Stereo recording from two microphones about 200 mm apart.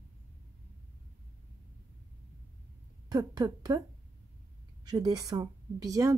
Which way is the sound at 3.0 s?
20° right (ahead or behind).